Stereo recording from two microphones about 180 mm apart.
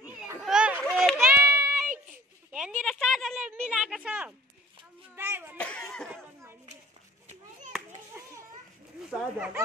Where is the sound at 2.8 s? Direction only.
Centre (ahead or behind).